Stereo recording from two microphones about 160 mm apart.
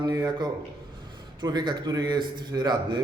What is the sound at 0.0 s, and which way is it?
A man's voice, 25° right (ahead or behind).